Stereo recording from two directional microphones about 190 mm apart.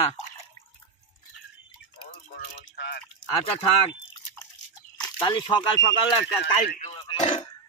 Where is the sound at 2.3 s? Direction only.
60° left (ahead or behind).